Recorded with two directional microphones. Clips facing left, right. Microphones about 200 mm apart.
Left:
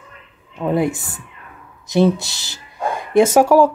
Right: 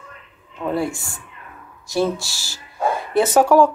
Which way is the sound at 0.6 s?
20° left (ahead or behind).